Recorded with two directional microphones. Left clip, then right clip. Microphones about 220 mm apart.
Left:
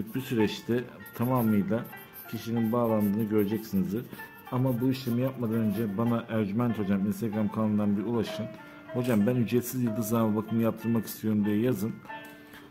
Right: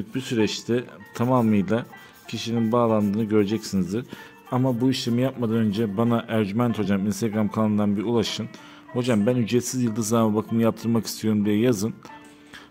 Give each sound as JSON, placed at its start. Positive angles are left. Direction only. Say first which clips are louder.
{"t": 0.1, "sound": "a man's voice", "louder": "right 5 dB", "side_deg": -20}